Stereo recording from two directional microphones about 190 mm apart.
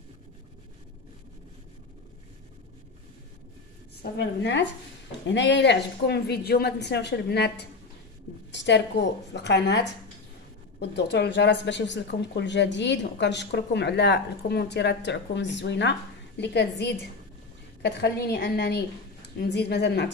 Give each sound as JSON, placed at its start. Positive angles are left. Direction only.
{"t": 4.0, "sound": "speech", "side_deg": 65}
{"t": 8.5, "sound": "a sound", "side_deg": 65}
{"t": 9.3, "sound": "speech", "side_deg": 65}